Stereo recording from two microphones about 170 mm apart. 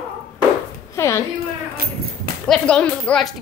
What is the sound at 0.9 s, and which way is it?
Speech, 15° left (ahead or behind).